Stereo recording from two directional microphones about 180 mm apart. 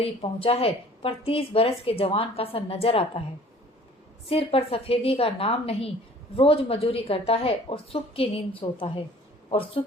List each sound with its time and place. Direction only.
0.0 s a woman's voice: 30° left (ahead or behind)
4.3 s a woman's voice: 30° left (ahead or behind)